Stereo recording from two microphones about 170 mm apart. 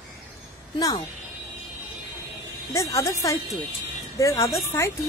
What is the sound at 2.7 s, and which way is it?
A woman's voice, 20° left (ahead or behind).